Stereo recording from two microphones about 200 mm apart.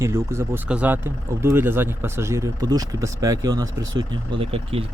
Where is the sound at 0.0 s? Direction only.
15° right (ahead or behind).